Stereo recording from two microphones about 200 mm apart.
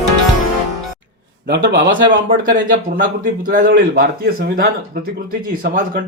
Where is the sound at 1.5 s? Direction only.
60° right (ahead or behind).